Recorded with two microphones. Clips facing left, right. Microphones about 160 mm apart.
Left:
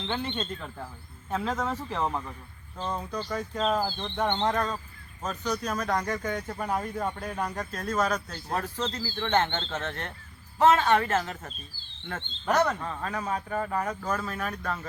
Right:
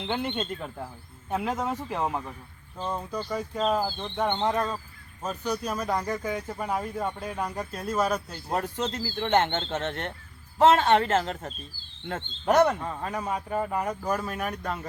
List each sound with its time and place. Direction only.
0.0 s speech: 15° right (ahead or behind)
11.2 s speech: 40° right (ahead or behind)
12.0 s speech: 20° right (ahead or behind)